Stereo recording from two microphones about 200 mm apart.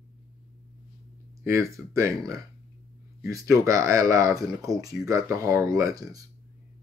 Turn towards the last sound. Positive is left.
turn(degrees=-15)  # may be behind; listen again after turning